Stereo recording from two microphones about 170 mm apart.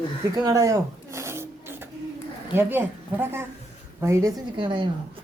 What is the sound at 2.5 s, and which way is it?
A woman's voice, 10° right (ahead or behind).